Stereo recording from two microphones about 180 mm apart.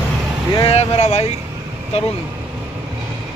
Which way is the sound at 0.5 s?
35° left (ahead or behind).